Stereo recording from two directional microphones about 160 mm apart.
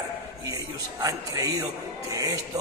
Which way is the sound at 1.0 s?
20° right (ahead or behind).